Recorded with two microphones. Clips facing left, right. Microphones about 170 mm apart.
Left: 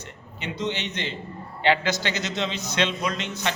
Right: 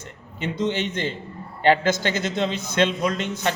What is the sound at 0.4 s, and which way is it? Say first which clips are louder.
A man's voice: right 5 dB; 50° right (ahead or behind).